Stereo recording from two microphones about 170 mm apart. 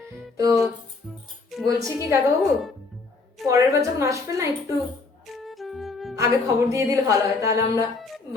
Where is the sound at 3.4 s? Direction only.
20° right (ahead or behind).